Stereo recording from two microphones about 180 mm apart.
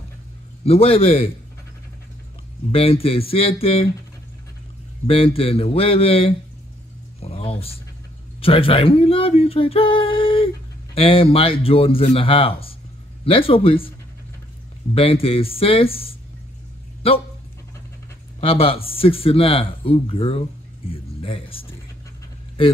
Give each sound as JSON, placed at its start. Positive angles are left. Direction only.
{"t": 0.7, "sound": "speech", "side_deg": 35}
{"t": 2.7, "sound": "speech", "side_deg": 30}
{"t": 5.0, "sound": "speech", "side_deg": 30}
{"t": 7.2, "sound": "a sound", "side_deg": 35}
{"t": 8.4, "sound": "speech", "side_deg": 30}
{"t": 15.0, "sound": "speech", "side_deg": 30}
{"t": 18.4, "sound": "speech", "side_deg": 30}